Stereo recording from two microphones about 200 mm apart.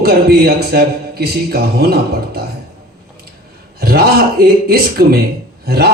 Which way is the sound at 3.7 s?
50° right (ahead or behind).